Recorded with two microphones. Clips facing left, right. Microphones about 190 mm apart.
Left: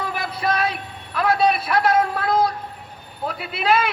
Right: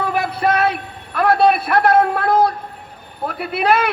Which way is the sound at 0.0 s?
55° right (ahead or behind).